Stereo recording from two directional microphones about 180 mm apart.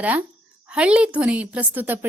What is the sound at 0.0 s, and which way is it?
A woman's voice, 10° right (ahead or behind).